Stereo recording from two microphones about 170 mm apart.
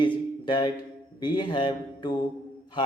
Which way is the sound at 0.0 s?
25° left (ahead or behind).